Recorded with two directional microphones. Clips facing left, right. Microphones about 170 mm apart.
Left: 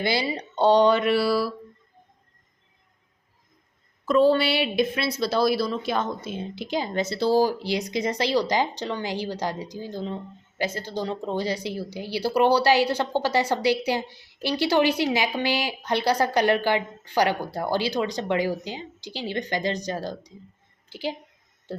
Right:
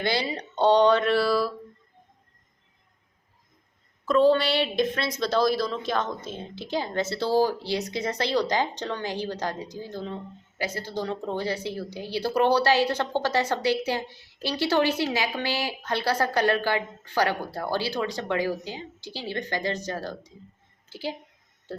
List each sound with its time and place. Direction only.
0.0 s speech: 10° left (ahead or behind)
4.0 s speech: 10° left (ahead or behind)